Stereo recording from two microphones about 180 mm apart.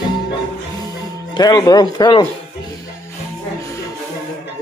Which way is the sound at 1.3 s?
20° left (ahead or behind).